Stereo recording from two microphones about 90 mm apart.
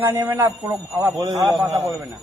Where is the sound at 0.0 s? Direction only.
25° right (ahead or behind).